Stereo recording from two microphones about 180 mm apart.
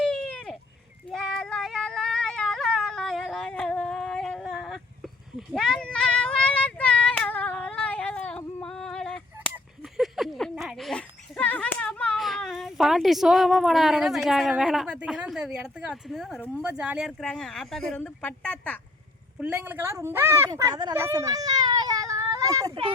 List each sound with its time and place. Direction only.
0.0 s a sound: 5° left (ahead or behind)
1.1 s female singing: 5° left (ahead or behind)
16.6 s speech: 5° right (ahead or behind)
17.1 s speech: 5° left (ahead or behind)
19.4 s speech: 10° right (ahead or behind); by 22.9 s 25° right (ahead or behind)